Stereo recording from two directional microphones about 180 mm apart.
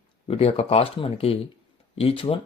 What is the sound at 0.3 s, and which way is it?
Speech, 35° left (ahead or behind).